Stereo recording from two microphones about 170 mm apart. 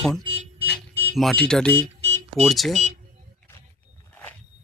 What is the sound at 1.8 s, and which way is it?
Smoke detector, 35° right (ahead or behind).